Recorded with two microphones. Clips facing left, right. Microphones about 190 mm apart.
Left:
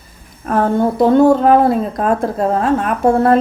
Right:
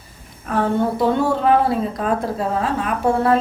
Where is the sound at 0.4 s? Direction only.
45° left (ahead or behind).